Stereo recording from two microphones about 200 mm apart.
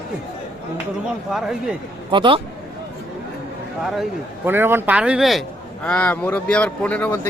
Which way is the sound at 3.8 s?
Centre (ahead or behind).